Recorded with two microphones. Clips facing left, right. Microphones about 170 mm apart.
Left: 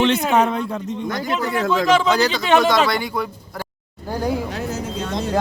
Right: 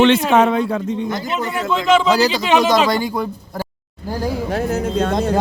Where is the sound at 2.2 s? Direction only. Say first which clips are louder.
Right 1 dB; 15° right (ahead or behind).